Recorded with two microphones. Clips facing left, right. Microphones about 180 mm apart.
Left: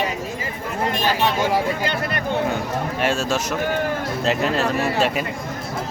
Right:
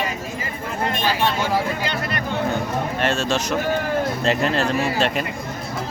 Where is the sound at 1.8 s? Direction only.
50° left (ahead or behind).